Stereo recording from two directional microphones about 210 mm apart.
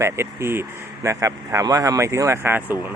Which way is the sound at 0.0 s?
10° right (ahead or behind).